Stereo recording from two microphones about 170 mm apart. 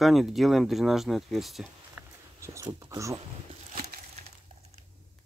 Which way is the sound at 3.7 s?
50° right (ahead or behind).